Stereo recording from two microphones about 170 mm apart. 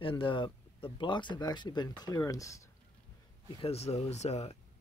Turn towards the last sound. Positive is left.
turn(degrees=40)  # may be behind; listen again after turning